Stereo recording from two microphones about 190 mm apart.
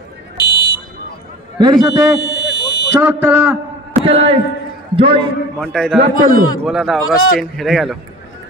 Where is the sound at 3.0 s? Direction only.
10° right (ahead or behind).